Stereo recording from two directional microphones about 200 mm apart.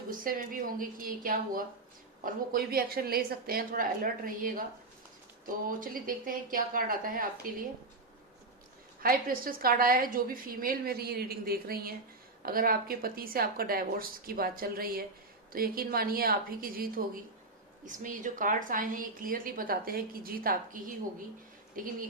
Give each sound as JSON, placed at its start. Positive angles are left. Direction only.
{"t": 0.1, "sound": "a woman's voice", "side_deg": -45}
{"t": 9.0, "sound": "a woman's voice", "side_deg": -45}